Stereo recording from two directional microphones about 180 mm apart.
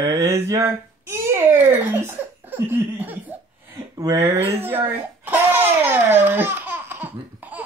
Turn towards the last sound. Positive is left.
turn(degrees=-10)  # may be behind; listen again after turning